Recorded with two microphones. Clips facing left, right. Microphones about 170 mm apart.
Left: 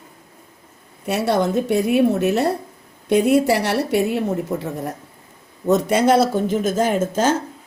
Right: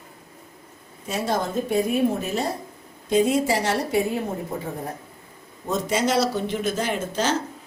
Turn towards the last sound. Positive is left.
turn(degrees=50)  # may be behind; listen again after turning